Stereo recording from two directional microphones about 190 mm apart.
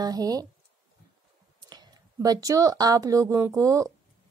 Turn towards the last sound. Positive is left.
turn(degrees=-15)  # may be behind; listen again after turning